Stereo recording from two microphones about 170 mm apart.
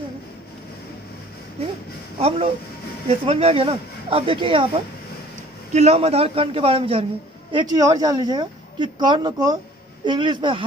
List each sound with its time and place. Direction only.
2.1 s speech: 35° right (ahead or behind)
5.7 s speech: 40° right (ahead or behind)
7.5 s speech: 25° right (ahead or behind)